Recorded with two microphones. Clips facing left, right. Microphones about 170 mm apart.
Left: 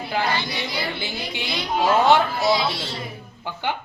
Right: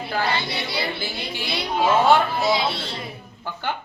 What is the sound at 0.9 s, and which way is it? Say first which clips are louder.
Speech: even; 20° left (ahead or behind).